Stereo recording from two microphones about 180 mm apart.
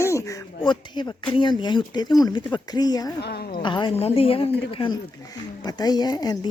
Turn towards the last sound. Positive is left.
turn(degrees=20)  # may be behind; listen again after turning